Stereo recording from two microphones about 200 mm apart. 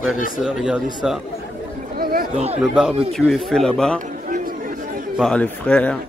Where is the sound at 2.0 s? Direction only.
45° right (ahead or behind).